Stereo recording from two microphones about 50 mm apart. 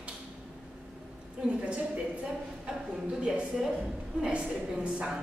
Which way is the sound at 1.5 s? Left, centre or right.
Right.